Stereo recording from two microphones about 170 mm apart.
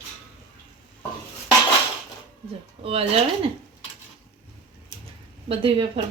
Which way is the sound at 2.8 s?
35° right (ahead or behind).